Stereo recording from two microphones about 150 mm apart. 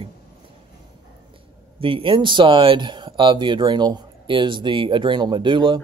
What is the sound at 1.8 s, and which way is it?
Speech, 35° right (ahead or behind).